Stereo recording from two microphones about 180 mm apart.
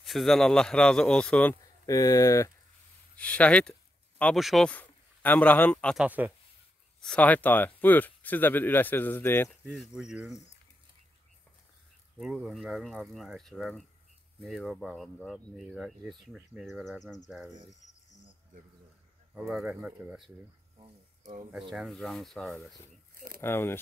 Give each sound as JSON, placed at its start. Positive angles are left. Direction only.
{"t": 0.0, "sound": "speech", "side_deg": 0}
{"t": 1.9, "sound": "speech", "side_deg": 20}
{"t": 5.9, "sound": "speech", "side_deg": -10}
{"t": 7.0, "sound": "speech", "side_deg": 5}
{"t": 9.5, "sound": "speech", "side_deg": 0}
{"t": 12.2, "sound": "speech", "side_deg": -5}
{"t": 19.3, "sound": "speech", "side_deg": -5}
{"t": 21.5, "sound": "speech", "side_deg": -5}
{"t": 23.1, "sound": "a sound", "side_deg": -55}
{"t": 23.4, "sound": "speech", "side_deg": 15}